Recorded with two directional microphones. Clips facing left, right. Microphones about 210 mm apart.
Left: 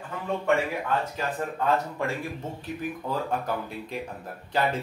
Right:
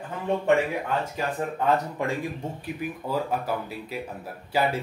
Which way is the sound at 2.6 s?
5° right (ahead or behind).